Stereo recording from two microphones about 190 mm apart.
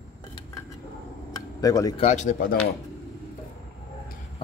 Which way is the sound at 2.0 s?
40° left (ahead or behind).